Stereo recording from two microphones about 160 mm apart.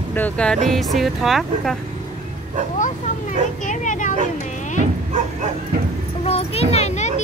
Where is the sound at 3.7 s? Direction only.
50° left (ahead or behind).